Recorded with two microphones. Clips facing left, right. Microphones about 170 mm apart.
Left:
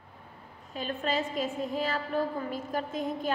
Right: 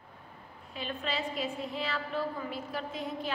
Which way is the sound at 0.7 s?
45° left (ahead or behind).